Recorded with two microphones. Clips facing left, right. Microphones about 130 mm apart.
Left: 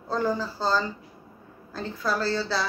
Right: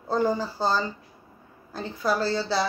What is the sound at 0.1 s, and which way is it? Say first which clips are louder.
A woman's voice: right 2 dB; 20° right (ahead or behind).